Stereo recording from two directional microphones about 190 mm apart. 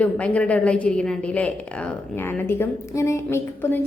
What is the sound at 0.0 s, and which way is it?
A woman's voice, 5° left (ahead or behind).